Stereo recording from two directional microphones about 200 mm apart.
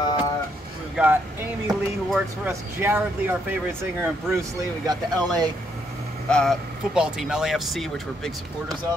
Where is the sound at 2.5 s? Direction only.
10° right (ahead or behind).